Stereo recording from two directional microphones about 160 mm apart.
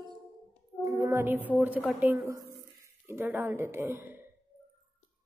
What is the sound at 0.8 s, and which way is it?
Brass instrument, 20° right (ahead or behind).